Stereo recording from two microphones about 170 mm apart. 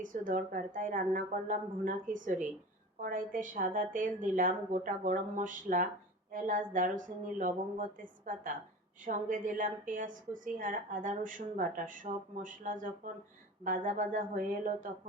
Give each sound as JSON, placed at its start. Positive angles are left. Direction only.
{"t": 0.0, "sound": "a woman's voice", "side_deg": -50}